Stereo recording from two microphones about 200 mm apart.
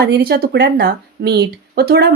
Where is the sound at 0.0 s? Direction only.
55° right (ahead or behind).